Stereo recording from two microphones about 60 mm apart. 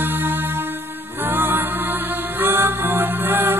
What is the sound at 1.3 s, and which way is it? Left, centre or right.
Music, right.